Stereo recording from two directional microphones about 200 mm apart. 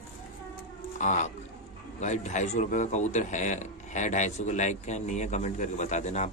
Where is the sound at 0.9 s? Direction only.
35° left (ahead or behind).